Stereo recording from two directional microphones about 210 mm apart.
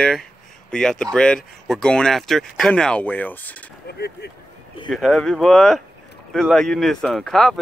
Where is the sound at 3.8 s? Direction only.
50° left (ahead or behind).